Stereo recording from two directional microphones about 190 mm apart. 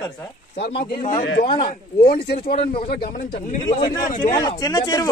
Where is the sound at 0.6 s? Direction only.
55° left (ahead or behind).